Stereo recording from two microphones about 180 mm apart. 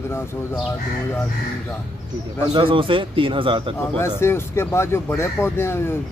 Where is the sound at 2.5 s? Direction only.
30° right (ahead or behind).